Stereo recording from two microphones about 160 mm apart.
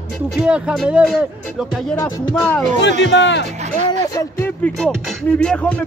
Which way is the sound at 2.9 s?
90° left.